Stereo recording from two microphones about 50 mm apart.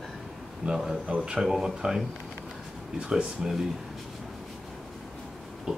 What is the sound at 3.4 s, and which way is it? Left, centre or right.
Speech, centre.